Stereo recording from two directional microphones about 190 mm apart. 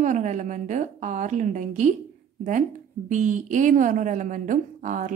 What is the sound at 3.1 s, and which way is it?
A woman's voice, 40° right (ahead or behind).